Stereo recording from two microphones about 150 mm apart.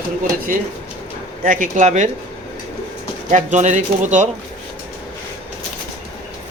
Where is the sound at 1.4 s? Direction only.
60° right (ahead or behind).